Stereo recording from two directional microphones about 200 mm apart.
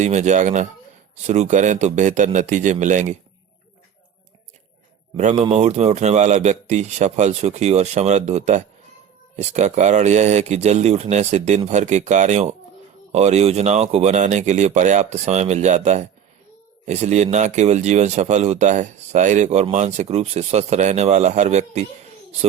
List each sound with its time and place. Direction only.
0.0 s speech: 35° right (ahead or behind)
5.1 s speech: 35° right (ahead or behind)